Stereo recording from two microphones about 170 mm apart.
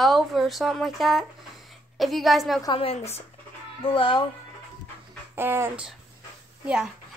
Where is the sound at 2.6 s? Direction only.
30° left (ahead or behind).